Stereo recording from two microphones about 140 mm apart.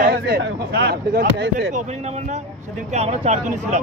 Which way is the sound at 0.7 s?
90° right.